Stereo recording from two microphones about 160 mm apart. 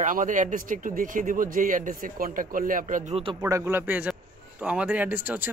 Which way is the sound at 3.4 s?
20° right (ahead or behind).